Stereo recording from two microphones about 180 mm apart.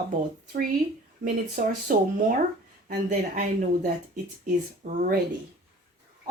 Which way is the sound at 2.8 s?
45° right (ahead or behind).